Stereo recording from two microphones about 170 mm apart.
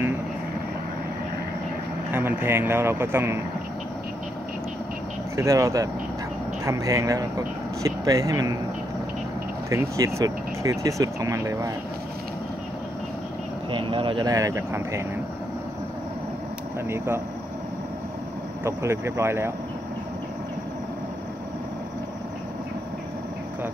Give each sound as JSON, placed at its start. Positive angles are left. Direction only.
{"t": 2.0, "sound": "speech", "side_deg": -10}
{"t": 5.3, "sound": "speech", "side_deg": -15}
{"t": 9.7, "sound": "speech", "side_deg": -20}
{"t": 13.7, "sound": "speech", "side_deg": -30}
{"t": 16.9, "sound": "speech", "side_deg": -15}
{"t": 18.6, "sound": "speech", "side_deg": -15}